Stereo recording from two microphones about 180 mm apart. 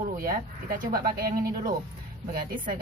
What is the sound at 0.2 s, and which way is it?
Speech, 50° right (ahead or behind).